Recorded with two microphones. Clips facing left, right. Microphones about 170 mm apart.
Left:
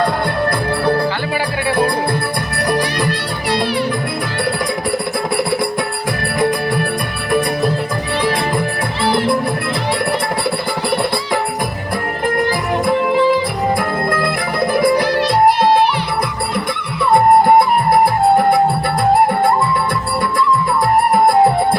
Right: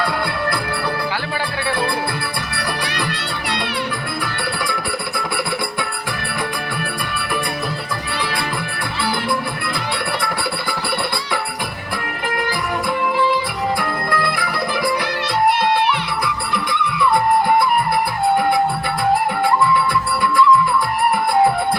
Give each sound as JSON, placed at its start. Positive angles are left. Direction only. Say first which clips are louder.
{"t": 9.0, "sound": "music", "louder": "left 7 dB", "side_deg": 45}
{"t": 14.7, "sound": "music", "louder": "left 9 dB", "side_deg": 45}
{"t": 15.4, "sound": "music", "louder": "left 3 dB", "side_deg": -65}
{"t": 17.0, "sound": "music", "louder": "left 6 dB", "side_deg": 45}